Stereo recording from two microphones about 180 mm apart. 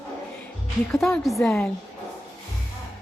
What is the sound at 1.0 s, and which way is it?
Speech, centre (ahead or behind).